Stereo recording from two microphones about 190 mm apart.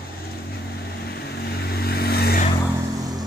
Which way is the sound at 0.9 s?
60° left (ahead or behind).